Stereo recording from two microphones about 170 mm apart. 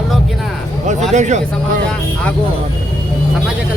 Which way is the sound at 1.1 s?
45° right (ahead or behind).